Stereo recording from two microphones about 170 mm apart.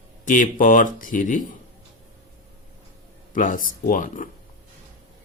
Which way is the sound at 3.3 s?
50° left (ahead or behind).